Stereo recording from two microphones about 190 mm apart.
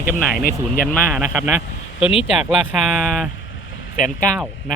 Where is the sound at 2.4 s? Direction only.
Centre (ahead or behind).